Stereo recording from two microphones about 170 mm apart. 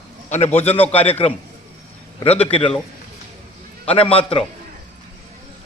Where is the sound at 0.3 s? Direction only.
40° left (ahead or behind).